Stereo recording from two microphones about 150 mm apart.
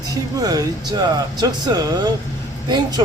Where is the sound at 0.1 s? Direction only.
25° right (ahead or behind).